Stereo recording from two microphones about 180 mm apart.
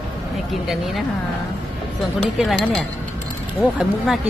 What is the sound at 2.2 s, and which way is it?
Speech, centre (ahead or behind).